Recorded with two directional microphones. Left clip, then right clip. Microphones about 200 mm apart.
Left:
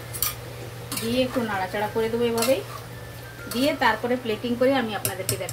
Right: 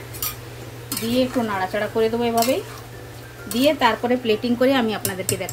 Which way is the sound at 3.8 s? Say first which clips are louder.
Right 3 dB; 60° right (ahead or behind).